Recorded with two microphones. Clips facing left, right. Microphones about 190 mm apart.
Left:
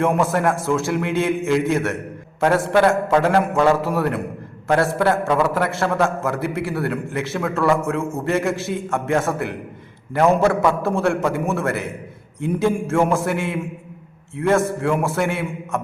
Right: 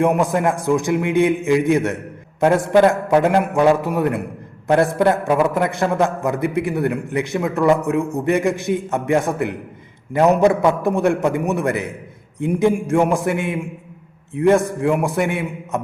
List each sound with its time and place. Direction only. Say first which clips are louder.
0.0 s a man's voice: right 2 dB; 15° right (ahead or behind)
3.1 s a man's voice: right 1 dB; 15° right (ahead or behind)